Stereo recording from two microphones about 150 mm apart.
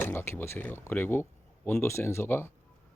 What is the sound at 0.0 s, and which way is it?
Speech, 15° left (ahead or behind).